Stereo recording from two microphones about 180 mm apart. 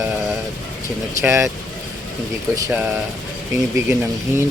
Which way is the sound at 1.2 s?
15° right (ahead or behind).